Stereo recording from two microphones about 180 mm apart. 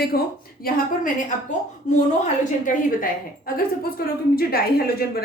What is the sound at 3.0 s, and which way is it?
A woman's voice, 55° left (ahead or behind).